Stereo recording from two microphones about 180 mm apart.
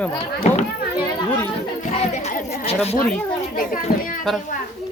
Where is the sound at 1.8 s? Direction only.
40° left (ahead or behind).